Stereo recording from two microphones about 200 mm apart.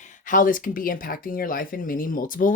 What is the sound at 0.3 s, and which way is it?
Speech, 40° left (ahead or behind).